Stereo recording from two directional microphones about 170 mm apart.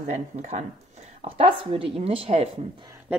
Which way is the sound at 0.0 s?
45° right (ahead or behind).